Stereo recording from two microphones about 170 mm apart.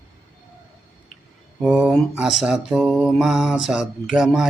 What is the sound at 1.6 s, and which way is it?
Speech, 10° right (ahead or behind).